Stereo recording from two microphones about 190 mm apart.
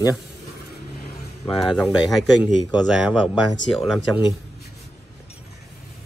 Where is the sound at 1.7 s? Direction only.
Centre (ahead or behind).